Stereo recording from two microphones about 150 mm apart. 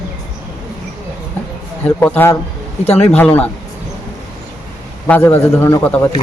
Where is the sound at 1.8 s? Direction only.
10° left (ahead or behind).